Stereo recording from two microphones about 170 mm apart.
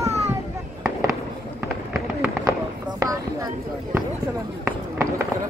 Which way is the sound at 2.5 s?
20° right (ahead or behind).